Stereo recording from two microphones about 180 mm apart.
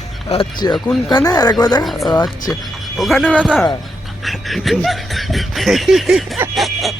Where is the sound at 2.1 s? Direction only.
20° left (ahead or behind).